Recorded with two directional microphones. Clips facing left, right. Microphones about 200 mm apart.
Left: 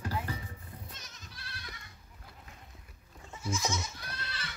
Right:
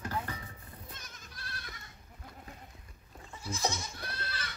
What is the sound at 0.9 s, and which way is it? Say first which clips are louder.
Goat: right 1 dB; 55° right (ahead or behind).